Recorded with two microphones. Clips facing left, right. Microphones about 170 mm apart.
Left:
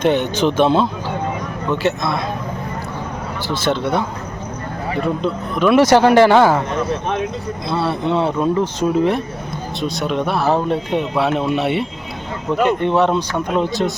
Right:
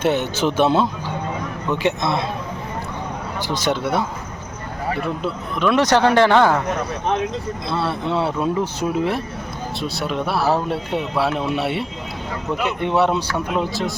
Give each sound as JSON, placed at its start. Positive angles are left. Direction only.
{"t": 0.0, "sound": "a man's voice", "side_deg": -5}
{"t": 3.4, "sound": "speech", "side_deg": -15}
{"t": 5.2, "sound": "speech", "side_deg": 5}
{"t": 7.7, "sound": "speech", "side_deg": 0}